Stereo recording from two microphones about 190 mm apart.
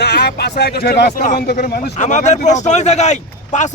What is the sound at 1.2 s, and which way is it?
Speech, 40° left (ahead or behind).